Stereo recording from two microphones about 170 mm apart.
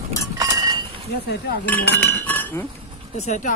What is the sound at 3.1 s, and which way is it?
Speech, 45° left (ahead or behind).